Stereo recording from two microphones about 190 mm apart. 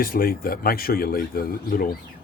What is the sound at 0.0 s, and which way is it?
Speech, 50° left (ahead or behind).